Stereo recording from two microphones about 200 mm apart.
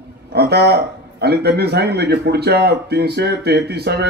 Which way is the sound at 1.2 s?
55° right (ahead or behind).